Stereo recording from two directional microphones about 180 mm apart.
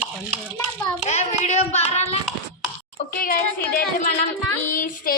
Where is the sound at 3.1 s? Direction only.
50° left (ahead or behind).